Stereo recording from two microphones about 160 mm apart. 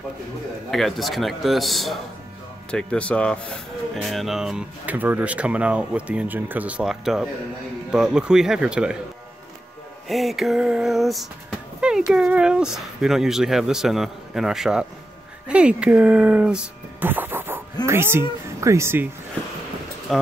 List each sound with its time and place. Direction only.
0.7 s speech: centre (ahead or behind)
10.0 s speech: centre (ahead or behind); by 19.0 s 15° right (ahead or behind)
20.1 s speech: centre (ahead or behind)